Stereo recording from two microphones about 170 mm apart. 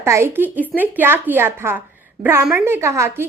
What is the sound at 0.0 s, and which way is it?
A woman's voice, 15° right (ahead or behind).